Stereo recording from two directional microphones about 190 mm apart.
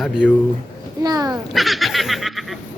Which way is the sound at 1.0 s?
20° right (ahead or behind).